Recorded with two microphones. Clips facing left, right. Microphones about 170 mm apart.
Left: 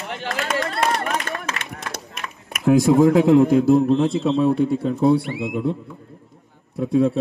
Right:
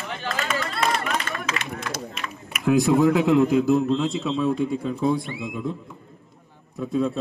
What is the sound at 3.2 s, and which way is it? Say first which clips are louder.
A man's voice: left 4 dB; 30° left (ahead or behind).